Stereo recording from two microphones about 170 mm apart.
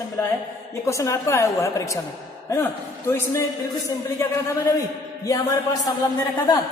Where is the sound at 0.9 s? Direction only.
20° left (ahead or behind).